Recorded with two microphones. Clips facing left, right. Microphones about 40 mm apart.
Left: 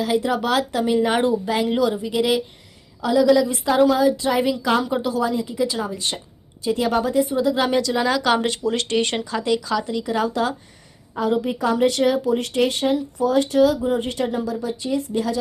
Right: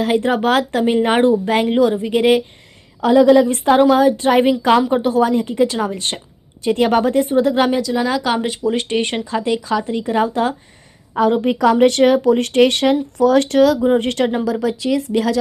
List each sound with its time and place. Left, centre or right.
0.0 s speech: right
7.7 s speech: centre
8.6 s speech: right
11.2 s speech: right
14.5 s speech: right